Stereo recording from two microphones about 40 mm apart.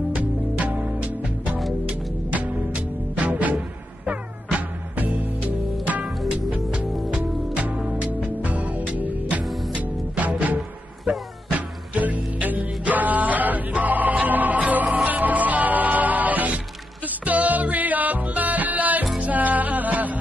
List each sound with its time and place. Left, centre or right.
0.1 s music: right
7.7 s music: right